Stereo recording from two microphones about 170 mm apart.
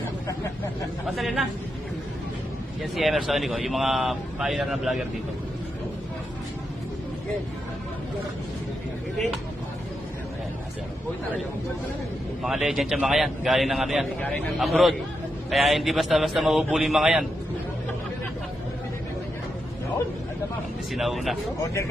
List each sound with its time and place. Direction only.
1.0 s a man's voice: centre (ahead or behind)
2.9 s a man's voice: centre (ahead or behind)
12.4 s a man's voice: 5° right (ahead or behind)
20.9 s a man's voice: centre (ahead or behind)